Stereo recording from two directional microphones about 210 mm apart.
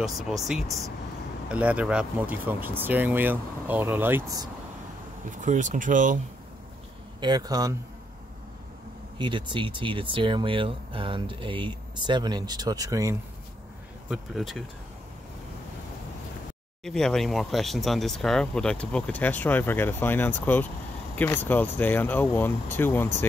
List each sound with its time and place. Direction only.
0.0 s speech: centre (ahead or behind)
0.7 s speech: 15° right (ahead or behind)
5.3 s speech: 35° right (ahead or behind)
7.2 s speech: 20° right (ahead or behind)
9.2 s speech: 20° right (ahead or behind)
14.0 s speech: centre (ahead or behind)
16.8 s speech: centre (ahead or behind)